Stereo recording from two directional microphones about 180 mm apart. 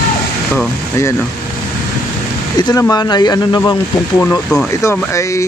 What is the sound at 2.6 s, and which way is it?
Speech, 20° left (ahead or behind).